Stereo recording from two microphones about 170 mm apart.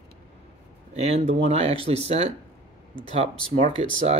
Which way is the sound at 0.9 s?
40° right (ahead or behind).